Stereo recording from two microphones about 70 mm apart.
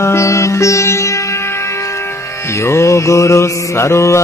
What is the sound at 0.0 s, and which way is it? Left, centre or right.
Music, left.